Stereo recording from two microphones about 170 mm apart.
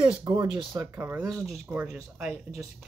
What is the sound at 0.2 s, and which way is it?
Speech, 30° right (ahead or behind).